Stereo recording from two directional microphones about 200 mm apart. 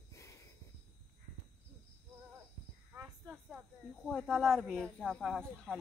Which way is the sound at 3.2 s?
Centre (ahead or behind).